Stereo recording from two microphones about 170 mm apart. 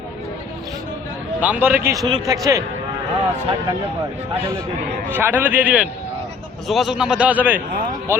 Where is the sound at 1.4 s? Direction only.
10° right (ahead or behind).